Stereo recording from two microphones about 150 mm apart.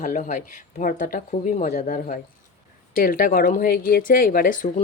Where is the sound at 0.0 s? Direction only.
55° left (ahead or behind).